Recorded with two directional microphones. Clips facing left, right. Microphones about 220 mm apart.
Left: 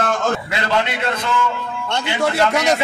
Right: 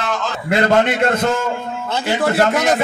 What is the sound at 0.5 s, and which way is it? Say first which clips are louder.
Speech: right 6 dB; 50° right (ahead or behind).